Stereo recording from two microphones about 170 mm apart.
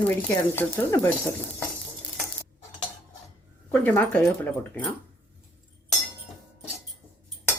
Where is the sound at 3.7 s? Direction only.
10° left (ahead or behind).